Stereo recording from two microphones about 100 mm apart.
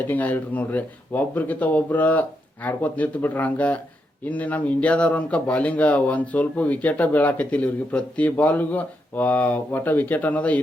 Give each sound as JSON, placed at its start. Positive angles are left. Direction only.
{"t": 0.1, "sound": "speech", "side_deg": 15}